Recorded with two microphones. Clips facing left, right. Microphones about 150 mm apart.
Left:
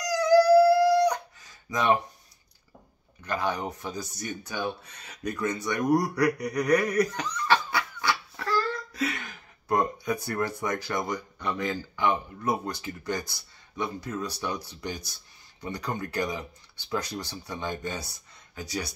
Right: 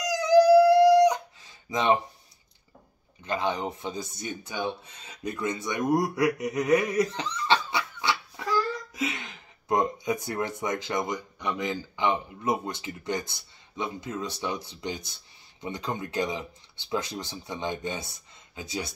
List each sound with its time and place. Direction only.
0.0 s howl: 20° right (ahead or behind)
3.3 s speech: 20° right (ahead or behind)
5.8 s speech: 5° right (ahead or behind)
6.4 s laughter: 20° right (ahead or behind)
11.1 s speech: 15° right (ahead or behind)